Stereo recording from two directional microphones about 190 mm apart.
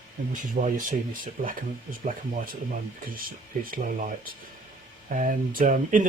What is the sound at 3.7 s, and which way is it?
Speech, 45° right (ahead or behind).